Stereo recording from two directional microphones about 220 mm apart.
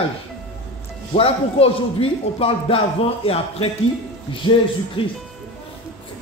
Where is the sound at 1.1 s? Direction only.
25° left (ahead or behind).